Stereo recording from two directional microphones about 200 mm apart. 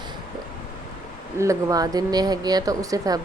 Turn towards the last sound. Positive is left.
turn(degrees=-15)  # may be behind; listen again after turning